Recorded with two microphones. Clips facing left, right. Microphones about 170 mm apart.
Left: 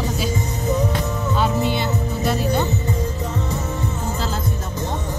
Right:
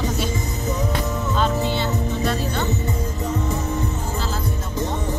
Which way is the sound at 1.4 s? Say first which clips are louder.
Left 1 dB; 10° left (ahead or behind).